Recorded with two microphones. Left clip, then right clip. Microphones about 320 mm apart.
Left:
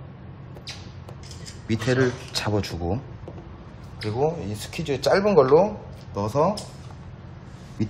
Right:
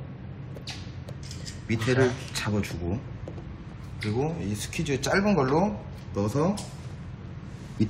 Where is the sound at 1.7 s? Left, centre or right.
Left.